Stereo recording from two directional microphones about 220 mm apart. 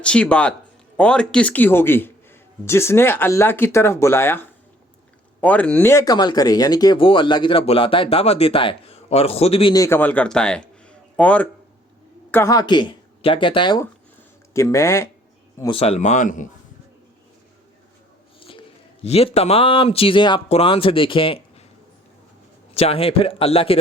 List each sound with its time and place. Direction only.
0.0 s a man's voice: 5° left (ahead or behind); by 16.5 s 35° left (ahead or behind)
18.3 s a sound: 25° left (ahead or behind)
19.0 s speech: 30° left (ahead or behind)
22.7 s speech: 25° left (ahead or behind)